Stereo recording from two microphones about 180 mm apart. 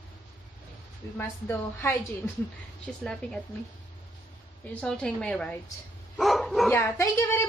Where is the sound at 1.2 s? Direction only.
10° left (ahead or behind).